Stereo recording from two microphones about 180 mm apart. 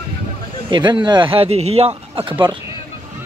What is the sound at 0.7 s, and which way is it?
Speech, 25° right (ahead or behind).